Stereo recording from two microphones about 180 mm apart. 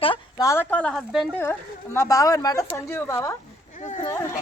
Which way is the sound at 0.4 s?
10° left (ahead or behind).